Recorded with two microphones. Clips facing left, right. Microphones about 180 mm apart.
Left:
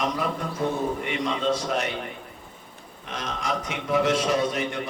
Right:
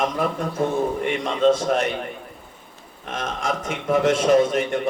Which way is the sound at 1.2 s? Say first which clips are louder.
Right 8 dB; 50° right (ahead or behind).